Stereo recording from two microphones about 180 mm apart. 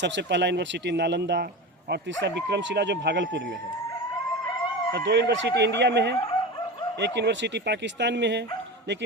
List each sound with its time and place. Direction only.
0.0 s speech: 75° right (ahead or behind)
4.9 s speech: 80° right